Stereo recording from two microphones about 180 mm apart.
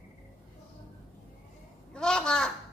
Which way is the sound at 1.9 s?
5° left (ahead or behind).